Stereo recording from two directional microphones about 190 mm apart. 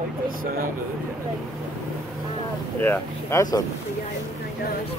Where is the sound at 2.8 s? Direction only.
10° left (ahead or behind).